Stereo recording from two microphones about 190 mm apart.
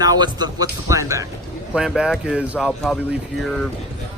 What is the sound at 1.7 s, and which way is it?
Speech, 5° right (ahead or behind).